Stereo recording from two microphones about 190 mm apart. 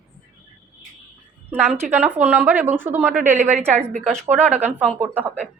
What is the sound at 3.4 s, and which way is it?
Speech, 40° right (ahead or behind).